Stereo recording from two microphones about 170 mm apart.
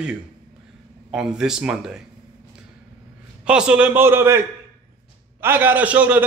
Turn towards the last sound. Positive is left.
turn(degrees=-10)  # may be behind; listen again after turning